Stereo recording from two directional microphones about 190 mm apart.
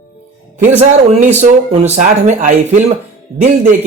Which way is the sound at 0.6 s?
40° right (ahead or behind).